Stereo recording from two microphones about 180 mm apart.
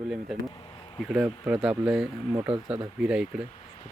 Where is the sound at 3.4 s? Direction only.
35° left (ahead or behind).